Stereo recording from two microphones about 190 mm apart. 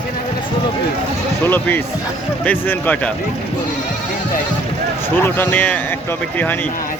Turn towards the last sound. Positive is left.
turn(degrees=10)  # may be behind; listen again after turning